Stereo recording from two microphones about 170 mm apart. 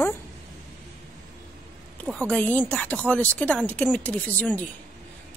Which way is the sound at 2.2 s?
10° left (ahead or behind).